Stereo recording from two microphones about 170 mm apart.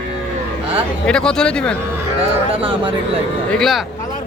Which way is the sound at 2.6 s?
30° right (ahead or behind).